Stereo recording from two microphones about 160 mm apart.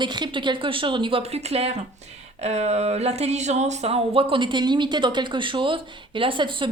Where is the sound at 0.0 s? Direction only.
30° right (ahead or behind).